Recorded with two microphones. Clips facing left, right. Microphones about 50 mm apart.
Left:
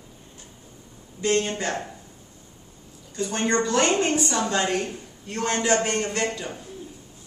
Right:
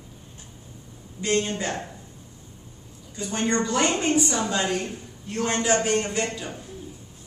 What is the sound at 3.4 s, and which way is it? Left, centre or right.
Speech, left.